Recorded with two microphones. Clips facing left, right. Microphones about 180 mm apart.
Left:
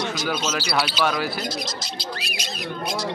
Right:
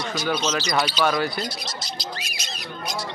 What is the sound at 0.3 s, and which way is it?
Speech, 5° left (ahead or behind).